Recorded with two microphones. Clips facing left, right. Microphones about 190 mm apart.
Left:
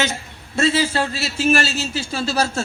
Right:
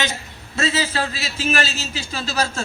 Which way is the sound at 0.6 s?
55° left (ahead or behind).